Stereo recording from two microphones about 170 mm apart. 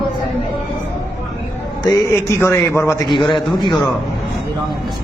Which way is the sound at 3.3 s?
25° left (ahead or behind).